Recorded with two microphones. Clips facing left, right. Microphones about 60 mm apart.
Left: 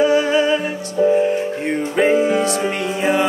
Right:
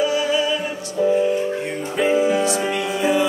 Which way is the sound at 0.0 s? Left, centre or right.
Left.